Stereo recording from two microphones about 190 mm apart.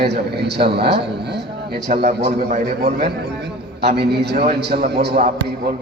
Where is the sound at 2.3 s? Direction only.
35° right (ahead or behind).